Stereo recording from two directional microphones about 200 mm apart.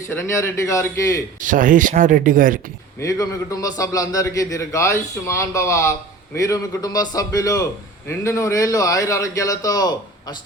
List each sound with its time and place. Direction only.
0.1 s a man's voice: 15° left (ahead or behind)
1.4 s speech: 40° right (ahead or behind)
3.0 s a man's voice: 15° left (ahead or behind)